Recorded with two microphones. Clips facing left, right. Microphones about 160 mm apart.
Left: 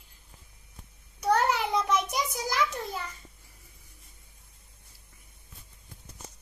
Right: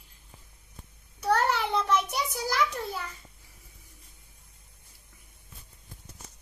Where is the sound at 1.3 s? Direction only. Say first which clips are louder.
Even; centre (ahead or behind).